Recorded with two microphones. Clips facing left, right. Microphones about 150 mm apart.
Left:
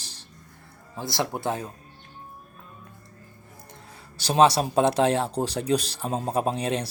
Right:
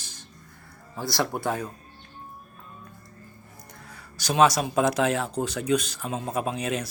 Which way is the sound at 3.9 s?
30° left (ahead or behind).